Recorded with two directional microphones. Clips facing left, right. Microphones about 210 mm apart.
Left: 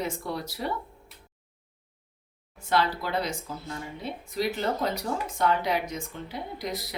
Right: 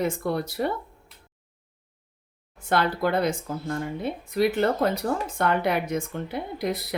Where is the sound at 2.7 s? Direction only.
55° right (ahead or behind).